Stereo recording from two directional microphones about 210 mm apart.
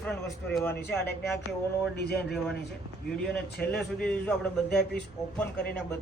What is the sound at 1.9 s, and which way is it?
Speech, 50° left (ahead or behind).